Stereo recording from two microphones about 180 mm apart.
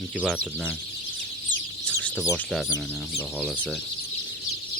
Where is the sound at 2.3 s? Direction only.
5° left (ahead or behind).